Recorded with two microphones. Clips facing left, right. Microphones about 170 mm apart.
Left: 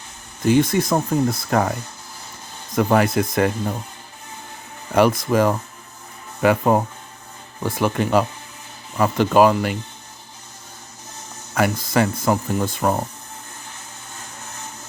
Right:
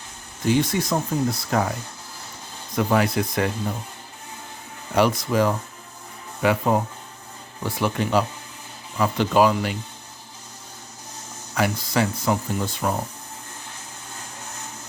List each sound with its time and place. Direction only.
0.4 s speech: 50° left (ahead or behind)
2.7 s speech: 50° left (ahead or behind)
4.9 s speech: 50° left (ahead or behind)
11.5 s speech: 50° left (ahead or behind)